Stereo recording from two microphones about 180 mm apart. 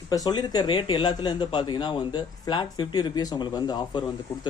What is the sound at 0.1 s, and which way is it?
Speech, 20° left (ahead or behind).